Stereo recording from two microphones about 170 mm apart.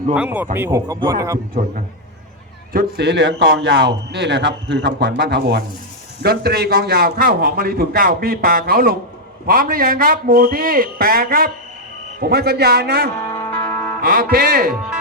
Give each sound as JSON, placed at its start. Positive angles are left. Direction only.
{"t": 0.1, "sound": "speech", "side_deg": -10}
{"t": 2.7, "sound": "speech", "side_deg": -85}
{"t": 4.9, "sound": "speech", "side_deg": -80}
{"t": 6.2, "sound": "a man's voice", "side_deg": -70}
{"t": 13.1, "sound": "music", "side_deg": 10}
{"t": 14.0, "sound": "a man's voice", "side_deg": -60}